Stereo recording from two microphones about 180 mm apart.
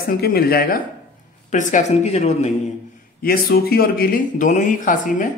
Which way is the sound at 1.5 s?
40° left (ahead or behind).